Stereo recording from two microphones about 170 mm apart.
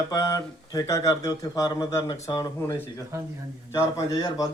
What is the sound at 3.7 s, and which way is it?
Speech, 20° left (ahead or behind).